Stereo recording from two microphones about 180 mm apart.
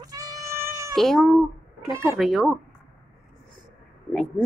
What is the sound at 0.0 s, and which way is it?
Meow, 20° right (ahead or behind).